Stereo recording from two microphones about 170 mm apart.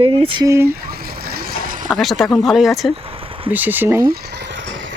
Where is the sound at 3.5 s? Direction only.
10° right (ahead or behind).